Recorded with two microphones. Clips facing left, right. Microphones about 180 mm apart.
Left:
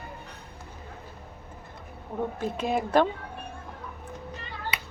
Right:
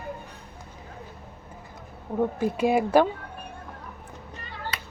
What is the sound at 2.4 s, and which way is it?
Speech, 10° right (ahead or behind).